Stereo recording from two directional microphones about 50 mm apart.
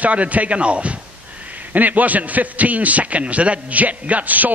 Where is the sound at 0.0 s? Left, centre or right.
Right.